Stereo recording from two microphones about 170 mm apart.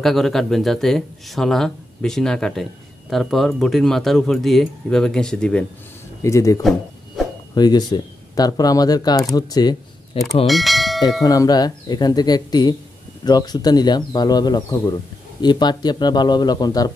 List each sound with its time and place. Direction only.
0.0 s speech: centre (ahead or behind)
6.2 s speech: 20° left (ahead or behind)
10.4 s bell: centre (ahead or behind)
11.2 s speech: 20° left (ahead or behind)